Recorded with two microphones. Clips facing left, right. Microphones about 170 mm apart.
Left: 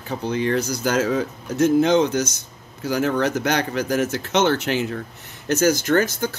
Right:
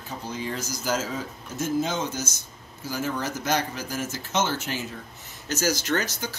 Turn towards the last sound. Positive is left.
turn(degrees=50)  # may be behind; listen again after turning